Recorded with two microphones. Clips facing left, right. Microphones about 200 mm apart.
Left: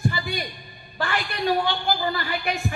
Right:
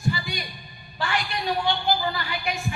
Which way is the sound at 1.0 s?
55° left (ahead or behind).